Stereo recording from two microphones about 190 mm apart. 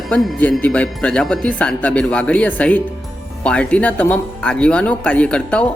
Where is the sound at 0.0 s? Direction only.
Centre (ahead or behind).